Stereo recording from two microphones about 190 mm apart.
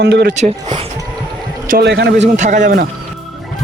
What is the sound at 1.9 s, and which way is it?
Speech, 65° right (ahead or behind).